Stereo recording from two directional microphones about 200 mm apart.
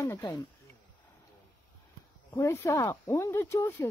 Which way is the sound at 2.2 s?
15° left (ahead or behind).